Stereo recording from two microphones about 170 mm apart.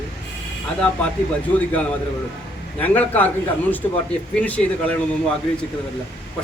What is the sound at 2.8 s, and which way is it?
Speech, 10° left (ahead or behind).